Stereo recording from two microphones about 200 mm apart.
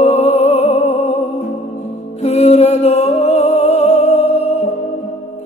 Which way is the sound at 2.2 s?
30° left (ahead or behind).